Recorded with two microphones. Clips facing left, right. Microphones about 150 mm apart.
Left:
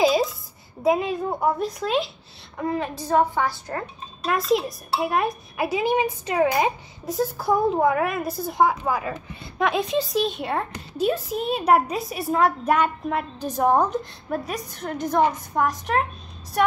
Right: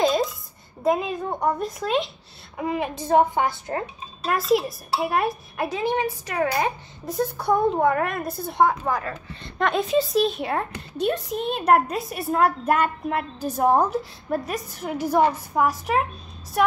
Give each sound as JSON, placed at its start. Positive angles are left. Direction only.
{"t": 0.0, "sound": "a sound", "side_deg": 5}
{"t": 0.8, "sound": "a child's voice", "side_deg": 0}
{"t": 2.5, "sound": "a woman's voice", "side_deg": -10}
{"t": 4.2, "sound": "a child's voice", "side_deg": 0}
{"t": 5.7, "sound": "a woman's voice", "side_deg": 10}
{"t": 7.1, "sound": "a child's voice", "side_deg": 0}